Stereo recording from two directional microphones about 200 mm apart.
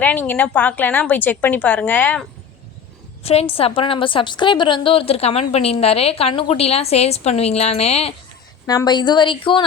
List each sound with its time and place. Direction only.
0.0 s a woman's voice: 10° left (ahead or behind)
3.2 s a woman's voice: 30° left (ahead or behind)
8.6 s a woman's voice: 20° left (ahead or behind)